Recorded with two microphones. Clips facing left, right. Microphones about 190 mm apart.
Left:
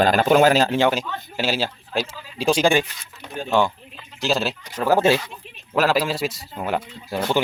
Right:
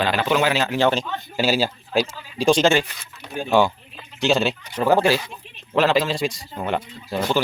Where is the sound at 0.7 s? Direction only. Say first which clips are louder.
Even; 15° left (ahead or behind).